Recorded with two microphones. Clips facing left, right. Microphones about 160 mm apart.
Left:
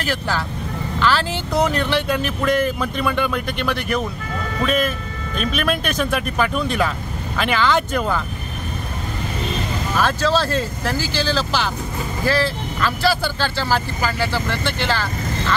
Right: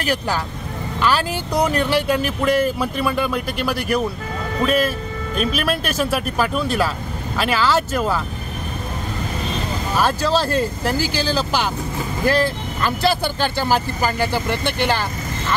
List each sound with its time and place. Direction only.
0.0 s speech: 15° right (ahead or behind)
5.4 s speech: 5° right (ahead or behind)
9.9 s speech: 10° right (ahead or behind)